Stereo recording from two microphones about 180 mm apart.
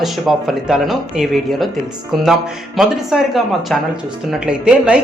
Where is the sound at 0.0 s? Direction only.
Centre (ahead or behind).